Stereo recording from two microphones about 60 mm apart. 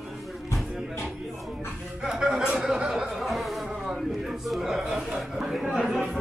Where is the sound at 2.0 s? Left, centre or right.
Centre.